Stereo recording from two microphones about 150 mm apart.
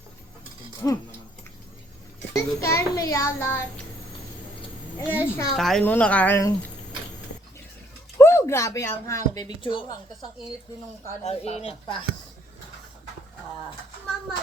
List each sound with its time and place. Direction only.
0.8 s speech: 20° left (ahead or behind)
2.3 s a child's voice: 20° left (ahead or behind)
4.9 s speech: 15° left (ahead or behind)
5.5 s a woman's voice: centre (ahead or behind)
8.2 s speech: 15° left (ahead or behind)
11.2 s speech: 45° left (ahead or behind)
11.6 s speech: 35° left (ahead or behind)